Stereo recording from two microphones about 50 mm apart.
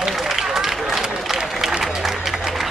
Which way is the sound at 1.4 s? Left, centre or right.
Centre.